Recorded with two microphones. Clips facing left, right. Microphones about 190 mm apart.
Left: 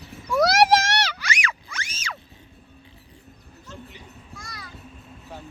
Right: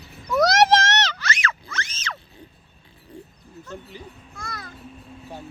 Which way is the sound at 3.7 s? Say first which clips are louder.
Right 4 dB; 60° right (ahead or behind).